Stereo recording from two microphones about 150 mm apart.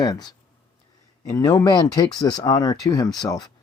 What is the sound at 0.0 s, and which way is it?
Speech, 25° left (ahead or behind).